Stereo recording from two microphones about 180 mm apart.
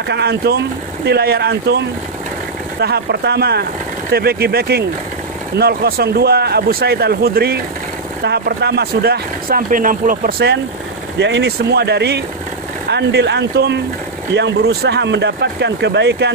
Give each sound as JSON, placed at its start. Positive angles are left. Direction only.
{"t": 0.1, "sound": "speech", "side_deg": -65}
{"t": 2.8, "sound": "speech", "side_deg": -65}
{"t": 11.1, "sound": "speech", "side_deg": -75}